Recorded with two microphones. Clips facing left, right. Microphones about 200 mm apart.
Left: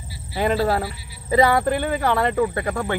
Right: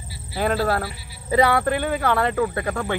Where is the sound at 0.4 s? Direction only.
15° left (ahead or behind).